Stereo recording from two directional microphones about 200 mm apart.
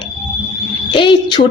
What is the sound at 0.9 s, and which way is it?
Speech, 25° left (ahead or behind).